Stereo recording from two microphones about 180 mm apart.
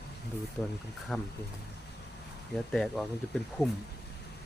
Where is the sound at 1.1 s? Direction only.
Centre (ahead or behind).